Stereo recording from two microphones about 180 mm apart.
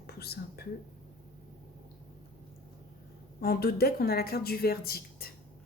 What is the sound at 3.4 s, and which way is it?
Speech, 55° left (ahead or behind).